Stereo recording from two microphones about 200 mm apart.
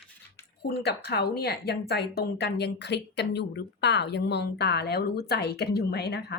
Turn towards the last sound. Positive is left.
turn(degrees=55)  # may be behind; listen again after turning